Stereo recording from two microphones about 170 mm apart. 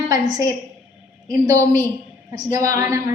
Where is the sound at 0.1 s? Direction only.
25° right (ahead or behind).